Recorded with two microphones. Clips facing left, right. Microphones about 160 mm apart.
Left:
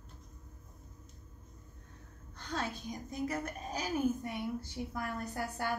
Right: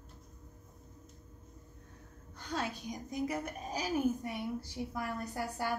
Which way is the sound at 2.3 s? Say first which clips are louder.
Right 1 dB; 10° right (ahead or behind).